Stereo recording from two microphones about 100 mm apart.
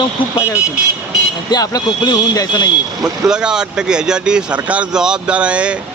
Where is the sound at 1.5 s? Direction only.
40° left (ahead or behind).